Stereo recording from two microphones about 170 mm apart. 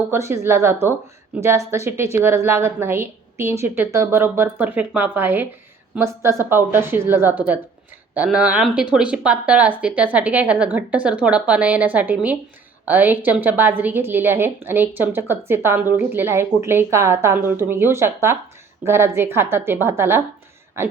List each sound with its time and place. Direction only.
0.1 s a woman's voice: 15° right (ahead or behind)